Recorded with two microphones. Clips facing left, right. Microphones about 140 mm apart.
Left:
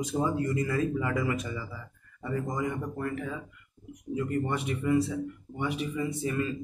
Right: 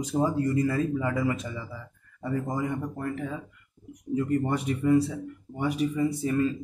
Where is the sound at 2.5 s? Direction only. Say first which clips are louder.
Right 2 dB; 30° right (ahead or behind).